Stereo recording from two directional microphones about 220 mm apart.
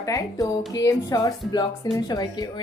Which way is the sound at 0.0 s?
15° left (ahead or behind).